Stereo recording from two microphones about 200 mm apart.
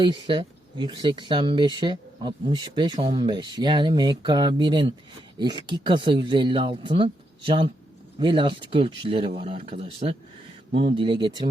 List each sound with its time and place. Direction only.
0.3 s speech: 25° right (ahead or behind)